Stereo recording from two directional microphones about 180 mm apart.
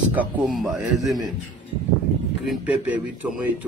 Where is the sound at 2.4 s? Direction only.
10° right (ahead or behind).